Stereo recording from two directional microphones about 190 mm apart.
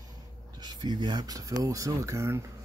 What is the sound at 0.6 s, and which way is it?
Speech, 20° right (ahead or behind).